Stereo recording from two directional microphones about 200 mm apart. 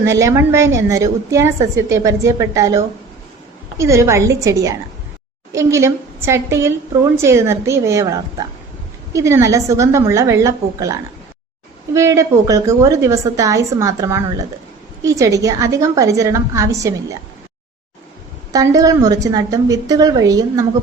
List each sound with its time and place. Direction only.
0.0 s a woman's voice: 15° right (ahead or behind)
11.9 s a woman's voice: 15° right (ahead or behind)
18.5 s a woman's voice: 15° right (ahead or behind)